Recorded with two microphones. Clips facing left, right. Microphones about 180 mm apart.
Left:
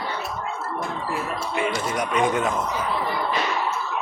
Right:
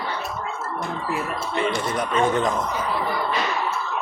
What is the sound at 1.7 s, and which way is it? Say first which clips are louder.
Speech: right 1 dB; 10° left (ahead or behind).